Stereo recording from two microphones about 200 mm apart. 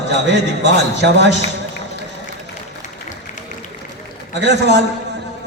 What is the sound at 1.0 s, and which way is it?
Speech, 60° right (ahead or behind).